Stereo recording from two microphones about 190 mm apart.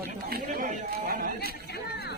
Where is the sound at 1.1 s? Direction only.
50° right (ahead or behind).